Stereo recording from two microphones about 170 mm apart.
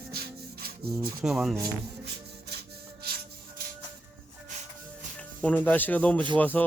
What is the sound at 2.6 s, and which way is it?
Rub, 65° right (ahead or behind).